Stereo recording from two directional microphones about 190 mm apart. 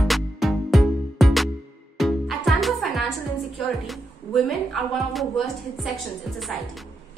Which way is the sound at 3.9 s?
Centre (ahead or behind).